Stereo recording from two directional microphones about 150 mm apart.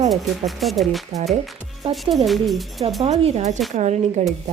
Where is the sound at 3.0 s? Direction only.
45° right (ahead or behind).